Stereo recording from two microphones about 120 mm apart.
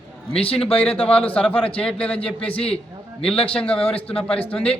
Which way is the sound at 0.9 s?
10° left (ahead or behind).